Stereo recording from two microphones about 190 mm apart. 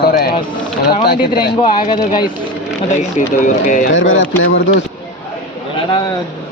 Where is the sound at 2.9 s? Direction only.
40° left (ahead or behind).